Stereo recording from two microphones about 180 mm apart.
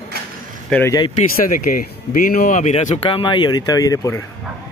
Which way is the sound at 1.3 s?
50° left (ahead or behind).